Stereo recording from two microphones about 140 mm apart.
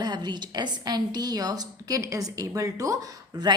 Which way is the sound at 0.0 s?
30° right (ahead or behind).